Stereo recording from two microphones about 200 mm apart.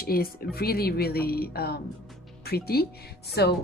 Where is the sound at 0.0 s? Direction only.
50° left (ahead or behind).